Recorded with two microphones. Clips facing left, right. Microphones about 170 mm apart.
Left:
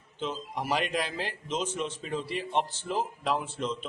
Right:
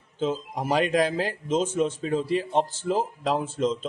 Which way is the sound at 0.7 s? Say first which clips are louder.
Right 8 dB; 45° right (ahead or behind).